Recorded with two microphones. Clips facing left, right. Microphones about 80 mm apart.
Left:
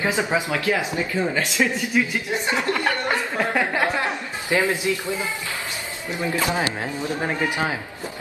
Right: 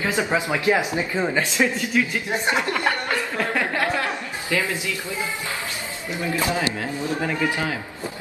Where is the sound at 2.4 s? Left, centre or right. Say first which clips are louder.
Right 3 dB; right.